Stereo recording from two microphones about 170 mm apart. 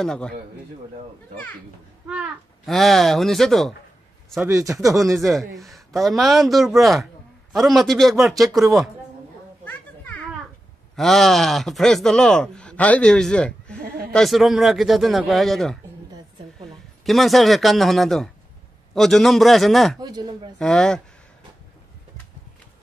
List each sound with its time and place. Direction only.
0.0 s speech: 5° left (ahead or behind)
2.0 s speech: 5° right (ahead or behind)
4.5 s speech: 15° right (ahead or behind)
4.9 s speech: centre (ahead or behind)
9.7 s children playing: 10° left (ahead or behind)
11.0 s speech: centre (ahead or behind)
17.0 s speech: centre (ahead or behind)
20.0 s speech: 25° right (ahead or behind)
20.5 s speech: 5° left (ahead or behind)